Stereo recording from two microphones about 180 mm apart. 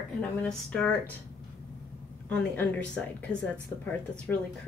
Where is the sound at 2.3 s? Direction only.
10° left (ahead or behind).